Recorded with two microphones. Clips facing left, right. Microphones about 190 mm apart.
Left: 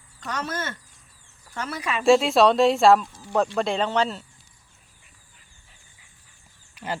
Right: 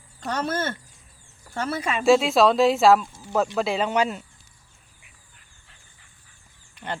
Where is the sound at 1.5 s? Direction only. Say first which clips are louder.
Right 3 dB; 30° right (ahead or behind).